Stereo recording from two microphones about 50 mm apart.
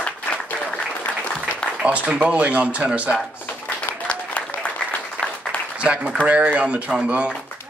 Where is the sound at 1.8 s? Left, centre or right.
Right.